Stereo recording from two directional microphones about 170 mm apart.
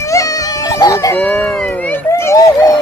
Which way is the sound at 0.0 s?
20° left (ahead or behind).